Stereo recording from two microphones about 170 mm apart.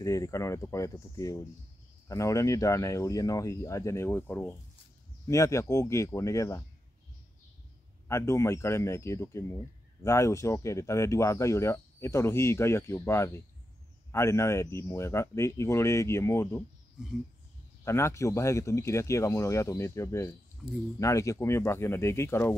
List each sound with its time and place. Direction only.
0.0 s speech: 20° left (ahead or behind)
8.1 s speech: 15° left (ahead or behind)
17.8 s speech: 15° left (ahead or behind)